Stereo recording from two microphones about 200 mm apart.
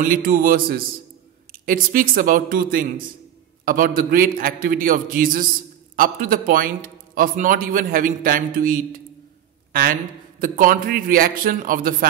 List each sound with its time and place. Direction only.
0.0 s a man's voice: 45° right (ahead or behind)
9.7 s a sound: 45° right (ahead or behind)
10.4 s a man's voice: 45° right (ahead or behind)